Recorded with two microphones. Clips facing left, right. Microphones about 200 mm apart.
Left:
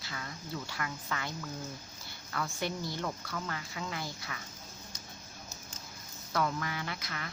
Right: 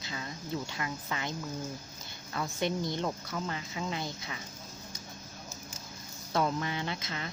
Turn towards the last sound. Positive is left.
turn(degrees=-25)  # may be behind; listen again after turning